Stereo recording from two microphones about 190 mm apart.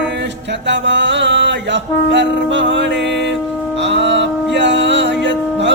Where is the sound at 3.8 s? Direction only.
70° right (ahead or behind).